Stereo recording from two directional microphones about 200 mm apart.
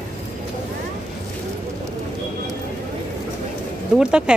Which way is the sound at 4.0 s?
5° right (ahead or behind).